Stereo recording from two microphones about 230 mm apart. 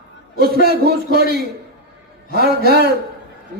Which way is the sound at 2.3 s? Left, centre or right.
Right.